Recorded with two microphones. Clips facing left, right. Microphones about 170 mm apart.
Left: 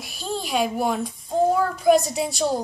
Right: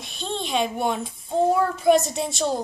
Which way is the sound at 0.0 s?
5° left (ahead or behind).